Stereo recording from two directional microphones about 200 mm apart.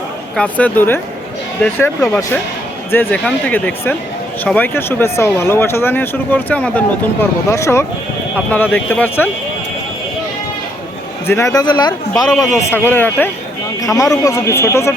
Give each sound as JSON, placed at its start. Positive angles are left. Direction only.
{"t": 0.3, "sound": "speech", "side_deg": 5}
{"t": 11.3, "sound": "a man's voice", "side_deg": 15}